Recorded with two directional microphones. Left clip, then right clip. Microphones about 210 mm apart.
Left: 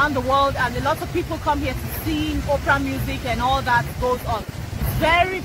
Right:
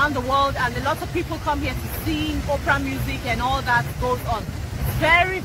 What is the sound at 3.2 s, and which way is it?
Speech, 55° left (ahead or behind).